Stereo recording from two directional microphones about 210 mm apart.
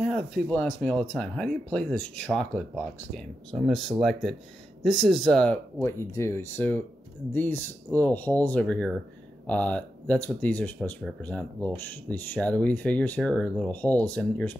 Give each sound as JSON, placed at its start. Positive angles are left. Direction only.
{"t": 0.0, "sound": "speech", "side_deg": 0}